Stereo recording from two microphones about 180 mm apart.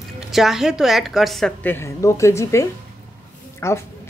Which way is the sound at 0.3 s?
Centre (ahead or behind).